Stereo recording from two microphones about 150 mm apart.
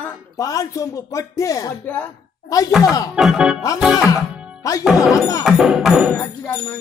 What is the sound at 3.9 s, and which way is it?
Music, 20° left (ahead or behind).